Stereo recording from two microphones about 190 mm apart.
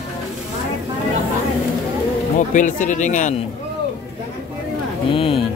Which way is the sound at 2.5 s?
40° left (ahead or behind).